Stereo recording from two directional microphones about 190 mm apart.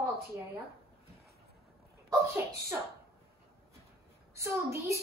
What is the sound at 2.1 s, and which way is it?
Speech, 15° right (ahead or behind).